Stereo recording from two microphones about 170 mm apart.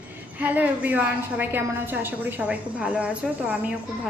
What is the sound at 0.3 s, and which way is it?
A woman's voice, 10° right (ahead or behind).